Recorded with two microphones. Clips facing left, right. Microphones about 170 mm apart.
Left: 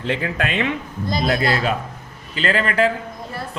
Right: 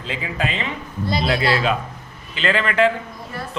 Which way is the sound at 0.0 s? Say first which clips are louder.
Left 3 dB; 70° left (ahead or behind).